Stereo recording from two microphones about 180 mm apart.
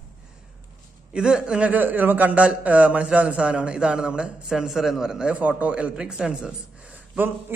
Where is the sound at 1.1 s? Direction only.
5° right (ahead or behind).